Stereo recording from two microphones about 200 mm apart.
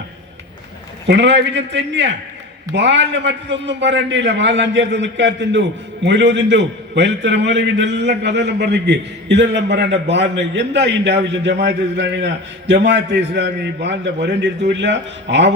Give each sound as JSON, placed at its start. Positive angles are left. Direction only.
{"t": 1.0, "sound": "a man's voice", "side_deg": -60}